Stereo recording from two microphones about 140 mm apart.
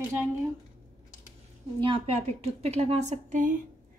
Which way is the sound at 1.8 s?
40° right (ahead or behind).